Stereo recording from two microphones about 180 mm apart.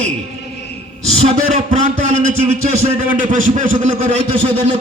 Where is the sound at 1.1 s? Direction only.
35° right (ahead or behind).